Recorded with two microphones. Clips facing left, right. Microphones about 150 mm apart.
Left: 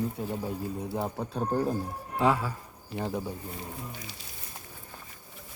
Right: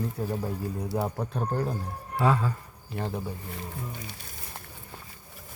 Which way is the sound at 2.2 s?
15° left (ahead or behind).